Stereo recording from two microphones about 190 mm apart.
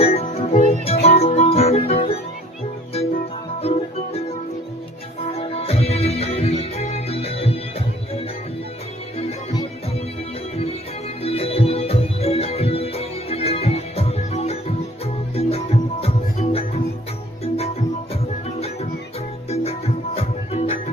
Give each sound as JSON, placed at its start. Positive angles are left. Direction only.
{"t": 0.0, "sound": "music", "side_deg": 30}
{"t": 3.6, "sound": "music", "side_deg": 35}
{"t": 11.2, "sound": "music", "side_deg": 30}